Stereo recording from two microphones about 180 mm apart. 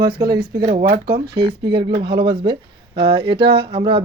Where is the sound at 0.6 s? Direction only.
55° right (ahead or behind).